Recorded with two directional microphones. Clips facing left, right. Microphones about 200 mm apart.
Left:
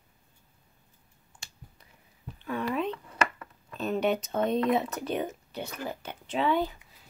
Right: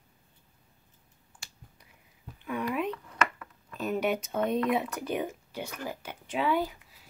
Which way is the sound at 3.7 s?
10° right (ahead or behind).